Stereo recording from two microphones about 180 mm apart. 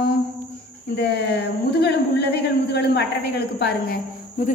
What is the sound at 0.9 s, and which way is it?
A woman's voice, 70° left (ahead or behind).